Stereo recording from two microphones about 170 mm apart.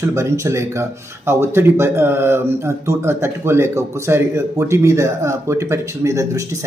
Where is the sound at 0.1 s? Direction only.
15° right (ahead or behind).